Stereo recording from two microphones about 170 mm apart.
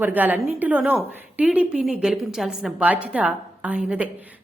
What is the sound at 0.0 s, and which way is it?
A woman's voice, 10° right (ahead or behind).